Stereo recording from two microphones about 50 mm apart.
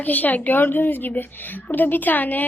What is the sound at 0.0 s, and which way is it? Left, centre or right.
Speech, left.